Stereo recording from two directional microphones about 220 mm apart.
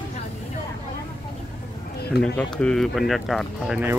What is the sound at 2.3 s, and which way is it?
Speech, 5° left (ahead or behind).